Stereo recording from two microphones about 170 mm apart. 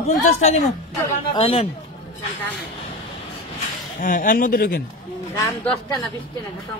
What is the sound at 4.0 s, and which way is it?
Speech, 55° left (ahead or behind).